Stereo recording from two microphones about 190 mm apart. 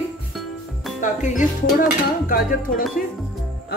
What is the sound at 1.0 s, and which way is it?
Music, 40° left (ahead or behind).